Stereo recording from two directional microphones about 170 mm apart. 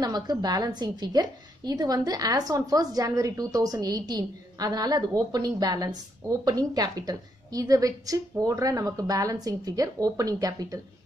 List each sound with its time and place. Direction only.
0.0 s a woman's voice: 25° right (ahead or behind)